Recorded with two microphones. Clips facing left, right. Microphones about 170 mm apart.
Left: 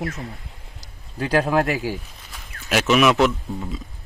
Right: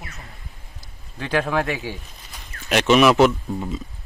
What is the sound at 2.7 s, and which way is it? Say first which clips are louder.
Speech: right 2 dB; centre (ahead or behind).